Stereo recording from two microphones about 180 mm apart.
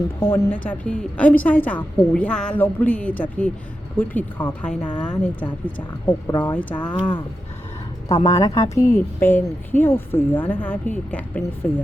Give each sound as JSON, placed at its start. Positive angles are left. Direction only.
{"t": 0.3, "sound": "a woman's voice", "side_deg": 10}
{"t": 5.1, "sound": "a woman's voice", "side_deg": 25}
{"t": 5.6, "sound": "a woman's voice", "side_deg": 10}
{"t": 8.0, "sound": "a woman's voice", "side_deg": 20}